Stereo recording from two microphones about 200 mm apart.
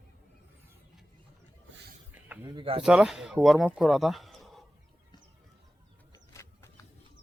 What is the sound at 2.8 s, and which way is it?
Speech, 5° right (ahead or behind).